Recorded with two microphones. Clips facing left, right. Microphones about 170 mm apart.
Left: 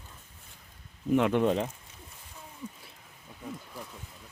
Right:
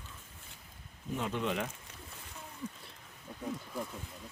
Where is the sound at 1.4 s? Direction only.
35° left (ahead or behind).